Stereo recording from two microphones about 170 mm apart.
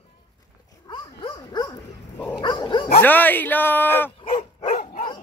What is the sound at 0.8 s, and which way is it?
Dog, 25° left (ahead or behind).